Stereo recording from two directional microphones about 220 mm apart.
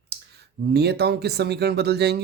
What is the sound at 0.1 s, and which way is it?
Speech, 50° right (ahead or behind).